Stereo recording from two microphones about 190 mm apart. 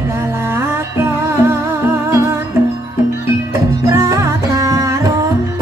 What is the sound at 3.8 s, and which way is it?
Music, 15° right (ahead or behind).